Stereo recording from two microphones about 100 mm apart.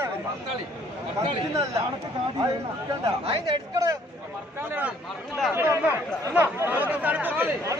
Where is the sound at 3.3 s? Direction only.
55° right (ahead or behind).